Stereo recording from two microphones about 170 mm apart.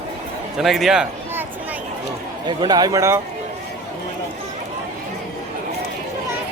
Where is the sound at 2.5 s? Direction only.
25° right (ahead or behind).